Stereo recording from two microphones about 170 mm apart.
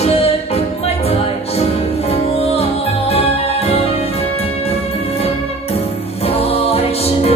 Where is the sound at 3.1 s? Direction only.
35° left (ahead or behind).